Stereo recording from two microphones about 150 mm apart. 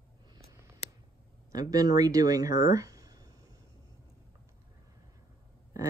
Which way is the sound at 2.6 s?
20° right (ahead or behind).